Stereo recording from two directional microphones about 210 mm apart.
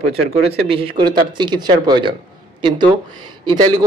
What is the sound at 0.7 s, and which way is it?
A man's voice, 25° right (ahead or behind).